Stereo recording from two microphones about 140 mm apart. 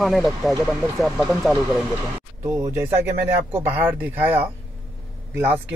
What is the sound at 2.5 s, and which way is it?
Speech, 25° right (ahead or behind).